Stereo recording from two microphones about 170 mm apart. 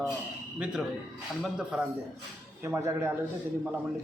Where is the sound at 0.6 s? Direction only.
5° right (ahead or behind).